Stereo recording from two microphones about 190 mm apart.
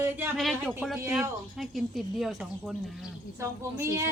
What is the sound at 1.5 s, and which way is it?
Speech, centre (ahead or behind).